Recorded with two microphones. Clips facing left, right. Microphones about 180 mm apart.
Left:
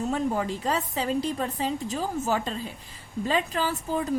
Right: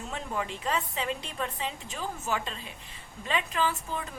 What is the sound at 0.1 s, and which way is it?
A woman's voice, 35° left (ahead or behind).